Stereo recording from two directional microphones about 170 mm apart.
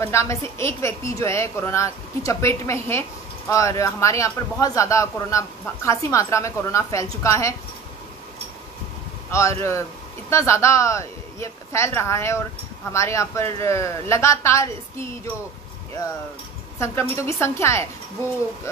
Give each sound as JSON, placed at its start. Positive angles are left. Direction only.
{"t": 0.0, "sound": "a woman's voice", "side_deg": 15}
{"t": 9.3, "sound": "a woman's voice", "side_deg": 15}
{"t": 16.7, "sound": "a woman's voice", "side_deg": 15}